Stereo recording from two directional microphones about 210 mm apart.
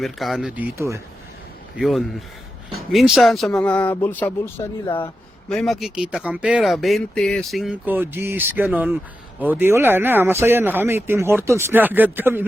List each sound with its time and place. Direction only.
0.0 s speech: centre (ahead or behind)
1.8 s speech: centre (ahead or behind)